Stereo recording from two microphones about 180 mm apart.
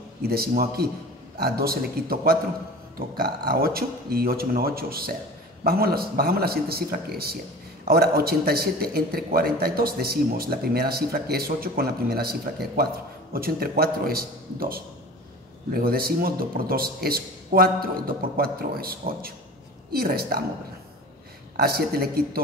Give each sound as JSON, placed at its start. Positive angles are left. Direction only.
{"t": 0.2, "sound": "a man's voice", "side_deg": -60}
{"t": 21.5, "sound": "a man's voice", "side_deg": -60}